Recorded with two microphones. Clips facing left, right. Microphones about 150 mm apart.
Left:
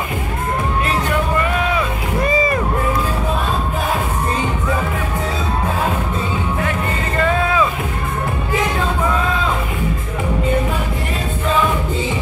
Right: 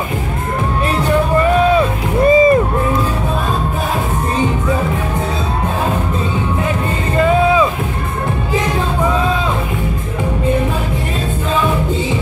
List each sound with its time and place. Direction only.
2.2 s music: 25° right (ahead or behind)